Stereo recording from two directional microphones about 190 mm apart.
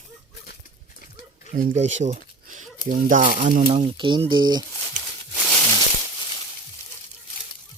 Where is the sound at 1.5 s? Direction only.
40° right (ahead or behind).